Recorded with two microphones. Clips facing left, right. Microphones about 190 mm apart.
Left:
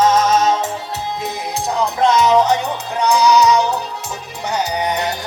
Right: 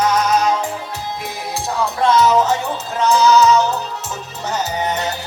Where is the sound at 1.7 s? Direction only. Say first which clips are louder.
Even; 15° left (ahead or behind).